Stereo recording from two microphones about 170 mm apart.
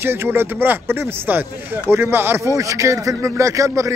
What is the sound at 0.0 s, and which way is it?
Speech, 15° right (ahead or behind).